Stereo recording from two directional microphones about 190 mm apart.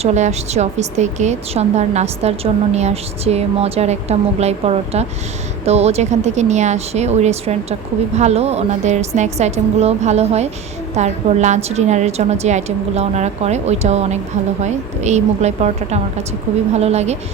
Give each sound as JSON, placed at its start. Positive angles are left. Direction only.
{"t": 0.0, "sound": "speech", "side_deg": -35}